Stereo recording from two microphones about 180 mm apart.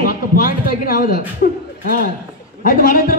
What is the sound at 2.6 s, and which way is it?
Speech, 50° left (ahead or behind).